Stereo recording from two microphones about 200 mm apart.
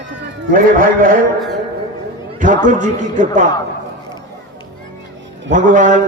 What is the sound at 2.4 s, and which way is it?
Speech, 40° right (ahead or behind).